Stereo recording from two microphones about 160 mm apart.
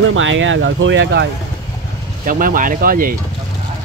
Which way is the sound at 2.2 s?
60° right (ahead or behind).